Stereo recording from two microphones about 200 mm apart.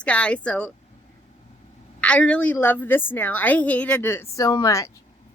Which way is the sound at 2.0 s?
5° left (ahead or behind).